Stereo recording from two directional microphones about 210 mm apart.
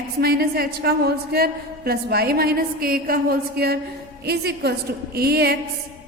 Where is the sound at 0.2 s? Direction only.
45° right (ahead or behind).